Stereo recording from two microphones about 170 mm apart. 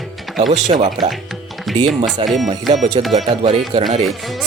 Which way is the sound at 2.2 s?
35° right (ahead or behind).